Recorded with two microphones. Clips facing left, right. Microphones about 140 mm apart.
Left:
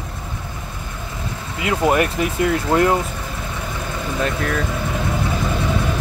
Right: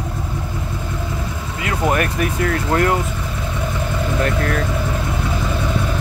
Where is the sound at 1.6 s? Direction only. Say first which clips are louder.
Left 2 dB; 20° left (ahead or behind).